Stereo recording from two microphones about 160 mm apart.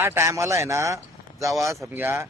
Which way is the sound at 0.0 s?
15° right (ahead or behind).